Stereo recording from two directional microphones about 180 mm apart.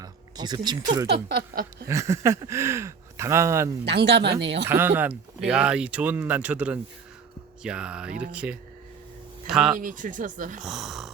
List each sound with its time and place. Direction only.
0.0 s speech: 25° right (ahead or behind)
1.0 s a sound: 60° right (ahead or behind)
1.9 s speech: 15° right (ahead or behind)
3.8 s speech: 70° right (ahead or behind)
4.7 s speech: 10° right (ahead or behind)
9.7 s speech: 50° right (ahead or behind)
10.6 s speech: centre (ahead or behind)